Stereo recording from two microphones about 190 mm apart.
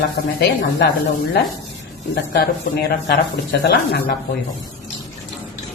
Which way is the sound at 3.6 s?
60° left (ahead or behind).